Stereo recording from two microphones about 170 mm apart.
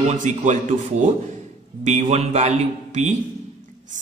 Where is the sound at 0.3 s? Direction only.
45° right (ahead or behind).